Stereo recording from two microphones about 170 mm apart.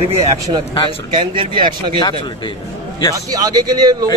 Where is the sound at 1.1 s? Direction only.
30° right (ahead or behind).